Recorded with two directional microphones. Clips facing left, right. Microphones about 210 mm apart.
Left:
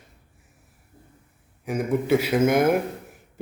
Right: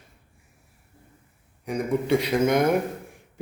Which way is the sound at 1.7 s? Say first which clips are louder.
Left 1 dB; 5° left (ahead or behind).